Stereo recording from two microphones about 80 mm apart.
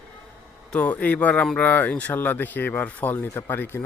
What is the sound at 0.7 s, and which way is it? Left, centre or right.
Speech, centre.